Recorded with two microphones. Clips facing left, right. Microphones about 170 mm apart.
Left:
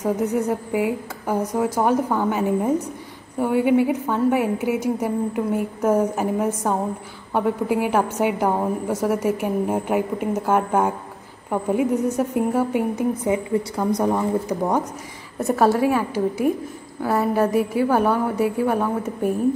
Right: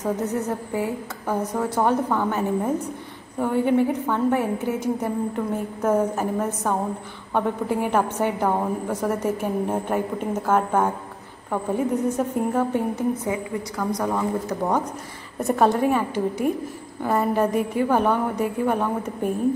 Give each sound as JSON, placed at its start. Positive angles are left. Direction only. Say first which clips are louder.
{"t": 0.0, "sound": "a woman's voice", "louder": "left 3 dB", "side_deg": 10}
{"t": 13.3, "sound": "a woman's voice", "louder": "left 5 dB", "side_deg": 20}
{"t": 15.4, "sound": "a woman's voice", "louder": "left 1 dB", "side_deg": 5}